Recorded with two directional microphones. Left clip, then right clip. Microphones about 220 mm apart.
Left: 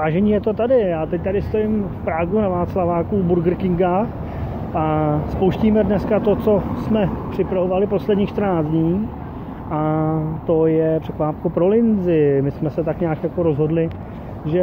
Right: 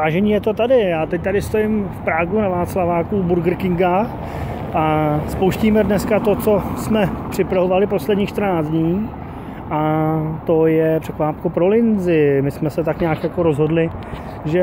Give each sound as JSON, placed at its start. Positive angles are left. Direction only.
{"t": 0.0, "sound": "speech", "side_deg": -10}